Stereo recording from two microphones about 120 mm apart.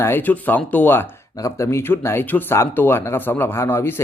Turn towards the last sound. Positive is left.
turn(degrees=20)  # may be behind; listen again after turning